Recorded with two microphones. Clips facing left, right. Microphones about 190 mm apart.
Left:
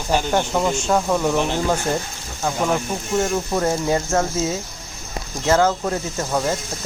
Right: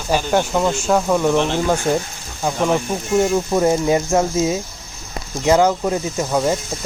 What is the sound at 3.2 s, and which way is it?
Speech, 15° right (ahead or behind).